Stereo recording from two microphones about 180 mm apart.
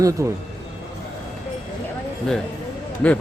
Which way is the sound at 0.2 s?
15° right (ahead or behind).